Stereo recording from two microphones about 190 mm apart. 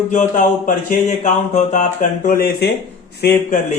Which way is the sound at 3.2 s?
55° left (ahead or behind).